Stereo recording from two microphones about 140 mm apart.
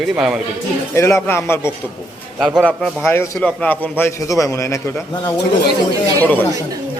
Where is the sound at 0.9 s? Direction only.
20° left (ahead or behind).